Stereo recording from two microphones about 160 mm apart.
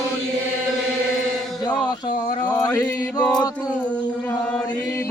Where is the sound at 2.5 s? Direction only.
25° left (ahead or behind).